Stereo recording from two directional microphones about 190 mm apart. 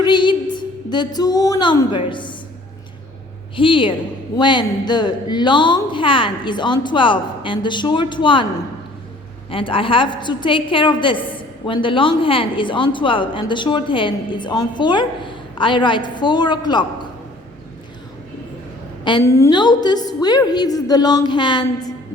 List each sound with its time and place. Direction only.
0.0 s a woman's voice: 25° left (ahead or behind)
3.5 s a woman's voice: 25° left (ahead or behind)
9.5 s a woman's voice: 30° left (ahead or behind)
19.0 s a woman's voice: 20° left (ahead or behind)